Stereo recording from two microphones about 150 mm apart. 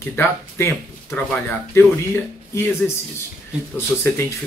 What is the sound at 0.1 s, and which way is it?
Speech, 15° left (ahead or behind).